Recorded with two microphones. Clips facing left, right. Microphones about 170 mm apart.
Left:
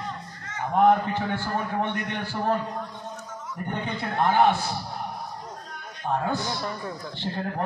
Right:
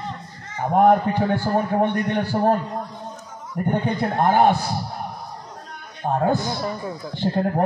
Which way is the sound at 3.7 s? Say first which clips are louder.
Right 6 dB; 45° right (ahead or behind).